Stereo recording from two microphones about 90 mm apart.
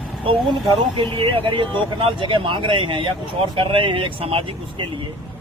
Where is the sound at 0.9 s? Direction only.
75° right (ahead or behind).